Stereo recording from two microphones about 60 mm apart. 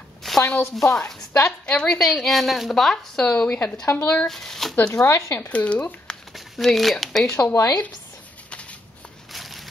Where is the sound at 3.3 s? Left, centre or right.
Left.